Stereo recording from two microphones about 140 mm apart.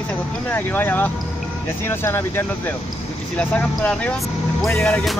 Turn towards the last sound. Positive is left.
turn(degrees=0)  # may be behind; listen again after turning